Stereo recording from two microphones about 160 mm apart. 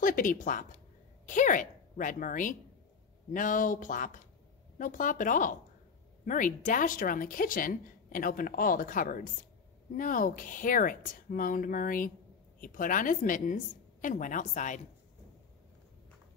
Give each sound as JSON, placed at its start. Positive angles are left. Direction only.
{"t": 0.0, "sound": "a woman's voice", "side_deg": 55}